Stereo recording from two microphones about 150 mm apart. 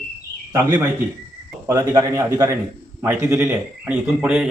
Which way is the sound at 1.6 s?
20° right (ahead or behind).